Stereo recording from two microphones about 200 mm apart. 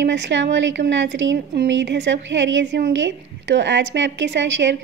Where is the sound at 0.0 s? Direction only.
60° right (ahead or behind).